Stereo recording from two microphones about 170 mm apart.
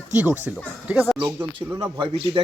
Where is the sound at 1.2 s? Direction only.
80° right.